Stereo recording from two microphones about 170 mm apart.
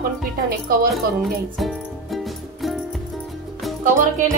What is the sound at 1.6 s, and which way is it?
Music, centre (ahead or behind).